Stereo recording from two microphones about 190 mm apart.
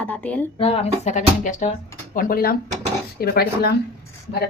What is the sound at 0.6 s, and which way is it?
Speech, 30° left (ahead or behind).